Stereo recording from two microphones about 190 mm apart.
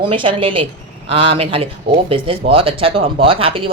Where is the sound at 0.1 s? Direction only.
30° right (ahead or behind).